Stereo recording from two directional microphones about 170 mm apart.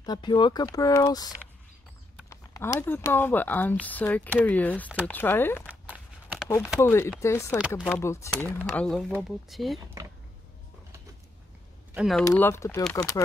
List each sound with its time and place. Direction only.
0.0 s speech: 25° left (ahead or behind)
5.7 s walk: 10° right (ahead or behind)
6.8 s speech: 15° left (ahead or behind)
10.0 s a sound: 20° right (ahead or behind)
11.9 s speech: centre (ahead or behind)
12.3 s speech: 15° left (ahead or behind)